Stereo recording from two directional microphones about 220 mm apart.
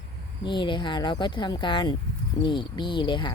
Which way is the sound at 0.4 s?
20° left (ahead or behind).